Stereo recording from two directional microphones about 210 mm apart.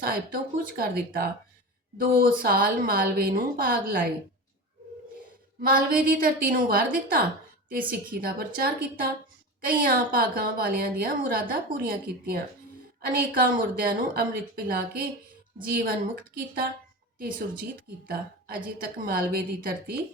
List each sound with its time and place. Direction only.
0.6 s a woman's voice: 45° right (ahead or behind)
5.6 s a woman's voice: 45° right (ahead or behind)
18.1 s a woman's voice: 45° right (ahead or behind)